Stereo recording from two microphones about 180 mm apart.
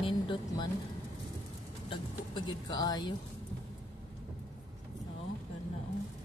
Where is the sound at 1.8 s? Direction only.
25° left (ahead or behind).